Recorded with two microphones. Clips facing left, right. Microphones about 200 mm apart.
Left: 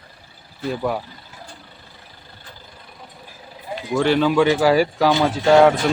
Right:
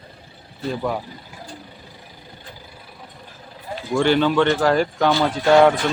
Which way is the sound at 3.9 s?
Centre (ahead or behind).